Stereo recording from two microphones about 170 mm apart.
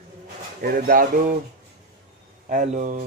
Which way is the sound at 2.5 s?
45° right (ahead or behind).